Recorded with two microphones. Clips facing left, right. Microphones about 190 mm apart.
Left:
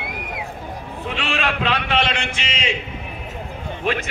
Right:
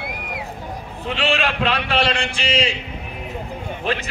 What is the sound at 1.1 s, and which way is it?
A man's voice, 35° right (ahead or behind).